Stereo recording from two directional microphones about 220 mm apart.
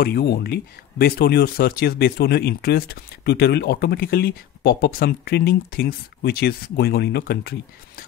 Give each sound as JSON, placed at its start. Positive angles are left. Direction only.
{"t": 0.0, "sound": "speech", "side_deg": 45}